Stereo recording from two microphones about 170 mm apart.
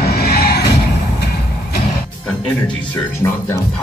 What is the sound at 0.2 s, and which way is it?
Music, 65° left (ahead or behind).